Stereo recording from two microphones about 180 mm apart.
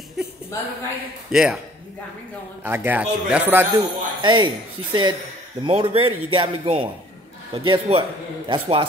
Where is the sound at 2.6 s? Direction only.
10° right (ahead or behind).